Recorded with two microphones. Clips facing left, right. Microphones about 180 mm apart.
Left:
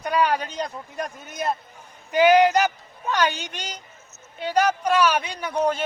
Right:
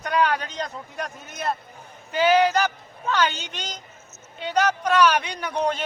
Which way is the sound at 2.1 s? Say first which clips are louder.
Left 3 dB; 15° left (ahead or behind).